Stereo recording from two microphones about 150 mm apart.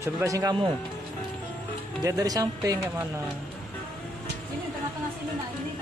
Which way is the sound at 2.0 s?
25° right (ahead or behind).